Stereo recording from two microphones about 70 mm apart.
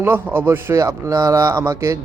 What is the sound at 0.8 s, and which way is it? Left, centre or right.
Speech, right.